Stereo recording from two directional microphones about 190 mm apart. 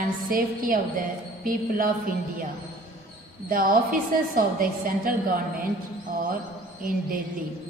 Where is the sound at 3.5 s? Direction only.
50° right (ahead or behind).